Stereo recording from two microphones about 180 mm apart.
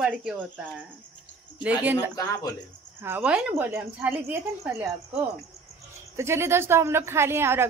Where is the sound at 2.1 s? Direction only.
20° left (ahead or behind).